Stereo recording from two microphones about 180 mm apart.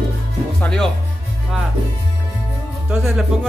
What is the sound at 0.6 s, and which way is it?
Speech, 5° left (ahead or behind).